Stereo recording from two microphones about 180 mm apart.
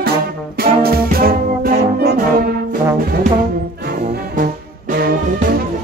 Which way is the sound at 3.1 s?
55° right (ahead or behind).